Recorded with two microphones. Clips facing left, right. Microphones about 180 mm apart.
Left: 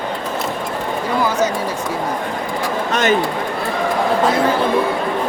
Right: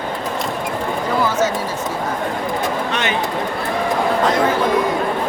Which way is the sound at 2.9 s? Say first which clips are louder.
Left 5 dB; 45° left (ahead or behind).